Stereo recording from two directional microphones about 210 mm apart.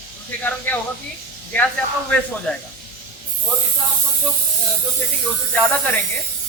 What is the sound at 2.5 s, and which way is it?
Speech, 5° left (ahead or behind).